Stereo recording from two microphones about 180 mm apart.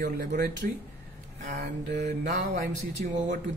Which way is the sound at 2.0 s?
45° right (ahead or behind).